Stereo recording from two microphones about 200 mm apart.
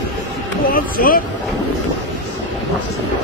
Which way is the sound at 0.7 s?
45° left (ahead or behind).